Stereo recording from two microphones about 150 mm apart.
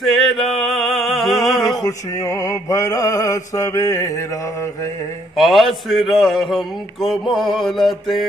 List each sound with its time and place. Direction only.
0.0 s a sound: centre (ahead or behind)
1.8 s mantra: 20° left (ahead or behind)
5.4 s a man's voice: centre (ahead or behind)